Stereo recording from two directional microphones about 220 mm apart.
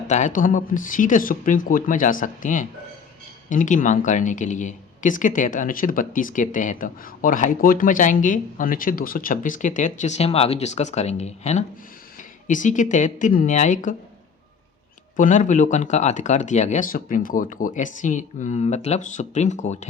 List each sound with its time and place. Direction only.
0.1 s speech: 35° left (ahead or behind)
15.1 s speech: 35° left (ahead or behind)